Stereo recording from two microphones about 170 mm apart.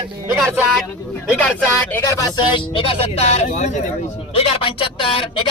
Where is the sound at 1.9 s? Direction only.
20° left (ahead or behind); by 3.7 s 40° left (ahead or behind).